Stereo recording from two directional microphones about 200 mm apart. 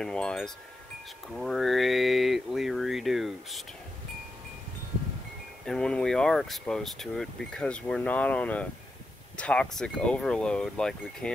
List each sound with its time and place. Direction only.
0.0 s speech: 5° left (ahead or behind)
5.7 s speech: 5° left (ahead or behind)